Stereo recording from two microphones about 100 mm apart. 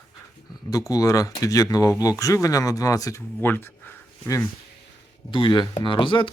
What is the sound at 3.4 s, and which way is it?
Speech, 20° left (ahead or behind).